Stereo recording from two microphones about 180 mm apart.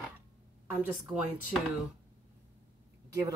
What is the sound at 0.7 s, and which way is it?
Speech, 5° right (ahead or behind).